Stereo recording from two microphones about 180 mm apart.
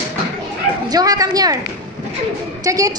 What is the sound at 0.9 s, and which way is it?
Speech, 20° right (ahead or behind).